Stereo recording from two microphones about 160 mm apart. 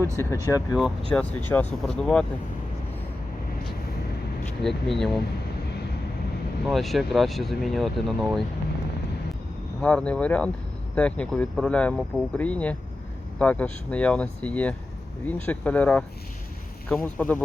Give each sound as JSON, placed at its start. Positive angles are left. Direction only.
{"t": 0.2, "sound": "speech", "side_deg": 20}
{"t": 1.1, "sound": "speech", "side_deg": 10}
{"t": 4.6, "sound": "speech", "side_deg": 0}
{"t": 6.7, "sound": "speech", "side_deg": 0}
{"t": 9.8, "sound": "speech", "side_deg": 5}